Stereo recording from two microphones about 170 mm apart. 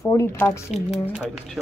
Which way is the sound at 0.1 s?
15° left (ahead or behind).